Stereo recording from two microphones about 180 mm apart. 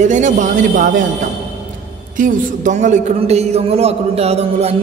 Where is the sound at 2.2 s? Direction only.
45° right (ahead or behind).